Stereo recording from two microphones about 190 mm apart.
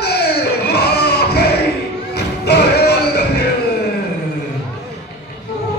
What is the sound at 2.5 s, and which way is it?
Music, 60° left (ahead or behind).